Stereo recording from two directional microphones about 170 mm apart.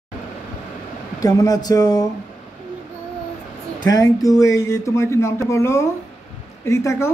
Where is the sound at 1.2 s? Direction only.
20° left (ahead or behind).